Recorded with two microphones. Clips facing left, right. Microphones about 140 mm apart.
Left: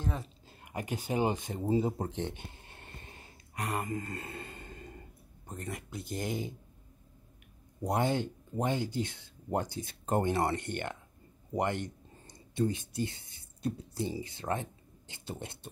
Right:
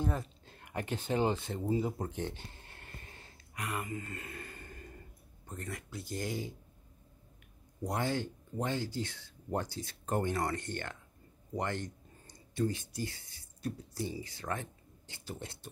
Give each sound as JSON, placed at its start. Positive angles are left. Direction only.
{"t": 0.0, "sound": "speech", "side_deg": 0}
{"t": 0.5, "sound": "speech", "side_deg": 10}
{"t": 1.7, "sound": "a sound", "side_deg": 30}
{"t": 3.5, "sound": "speech", "side_deg": 35}
{"t": 7.8, "sound": "speech", "side_deg": 20}